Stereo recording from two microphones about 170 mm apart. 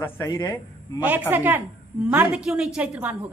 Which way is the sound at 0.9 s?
10° right (ahead or behind).